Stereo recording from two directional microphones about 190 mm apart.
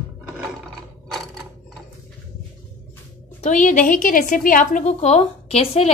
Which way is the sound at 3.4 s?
40° left (ahead or behind).